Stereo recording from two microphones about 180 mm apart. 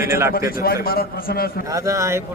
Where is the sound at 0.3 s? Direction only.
55° left (ahead or behind).